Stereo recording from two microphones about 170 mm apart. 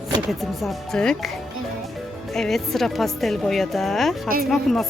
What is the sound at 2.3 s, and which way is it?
Speech, centre (ahead or behind).